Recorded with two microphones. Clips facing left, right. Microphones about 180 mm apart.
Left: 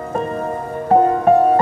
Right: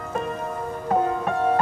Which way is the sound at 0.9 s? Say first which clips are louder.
Left 9 dB; 45° left (ahead or behind).